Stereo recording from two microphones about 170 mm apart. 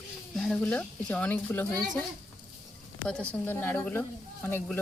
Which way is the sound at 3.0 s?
5° left (ahead or behind).